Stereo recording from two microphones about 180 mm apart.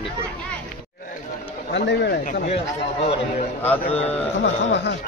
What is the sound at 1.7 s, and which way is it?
Speech, 70° left (ahead or behind).